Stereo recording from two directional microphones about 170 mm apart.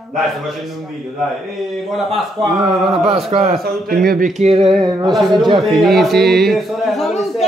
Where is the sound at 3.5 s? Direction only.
65° right (ahead or behind).